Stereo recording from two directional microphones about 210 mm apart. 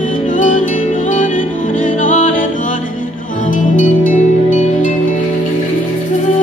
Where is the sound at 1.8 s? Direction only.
35° left (ahead or behind).